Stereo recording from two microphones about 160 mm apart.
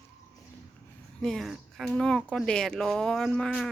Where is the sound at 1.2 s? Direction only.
Centre (ahead or behind).